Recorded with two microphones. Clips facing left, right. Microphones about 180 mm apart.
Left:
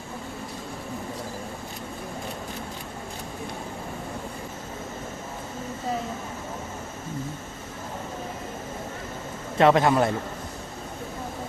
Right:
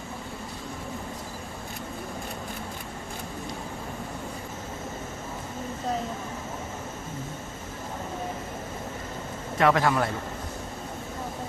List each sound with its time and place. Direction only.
9.6 s a man's voice: 25° left (ahead or behind)